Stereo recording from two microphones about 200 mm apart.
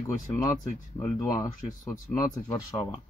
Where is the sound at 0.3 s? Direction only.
15° left (ahead or behind).